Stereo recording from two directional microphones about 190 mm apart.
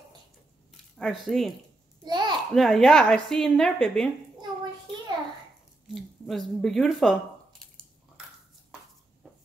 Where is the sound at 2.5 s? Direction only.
Centre (ahead or behind).